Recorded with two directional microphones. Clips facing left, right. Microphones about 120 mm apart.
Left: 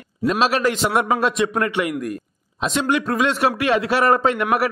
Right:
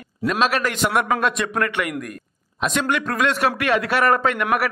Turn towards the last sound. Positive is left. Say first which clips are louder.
# left 2 dB
turn(degrees=30)  # may be behind; listen again after turning